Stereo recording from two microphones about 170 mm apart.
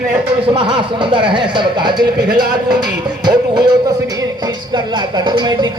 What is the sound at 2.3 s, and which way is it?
Music, 60° right (ahead or behind).